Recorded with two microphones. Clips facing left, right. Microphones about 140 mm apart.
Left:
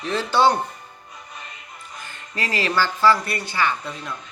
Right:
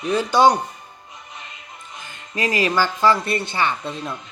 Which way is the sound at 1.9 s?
15° right (ahead or behind).